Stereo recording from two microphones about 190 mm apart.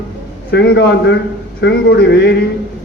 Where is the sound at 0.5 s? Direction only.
65° left (ahead or behind).